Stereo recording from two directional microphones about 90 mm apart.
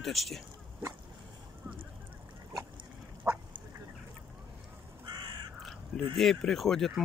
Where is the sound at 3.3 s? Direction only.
30° right (ahead or behind).